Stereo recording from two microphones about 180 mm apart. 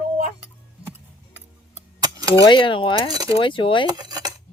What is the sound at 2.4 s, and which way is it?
Cutlery, 25° left (ahead or behind).